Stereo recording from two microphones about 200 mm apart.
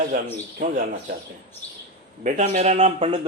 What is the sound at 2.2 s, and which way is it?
Speech, 35° right (ahead or behind).